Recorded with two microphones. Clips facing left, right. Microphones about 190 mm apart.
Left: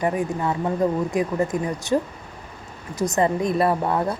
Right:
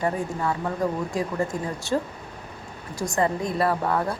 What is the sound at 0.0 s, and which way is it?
Speech, 15° left (ahead or behind).